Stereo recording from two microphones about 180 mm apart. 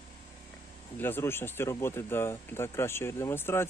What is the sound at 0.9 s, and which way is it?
Speech, 10° left (ahead or behind).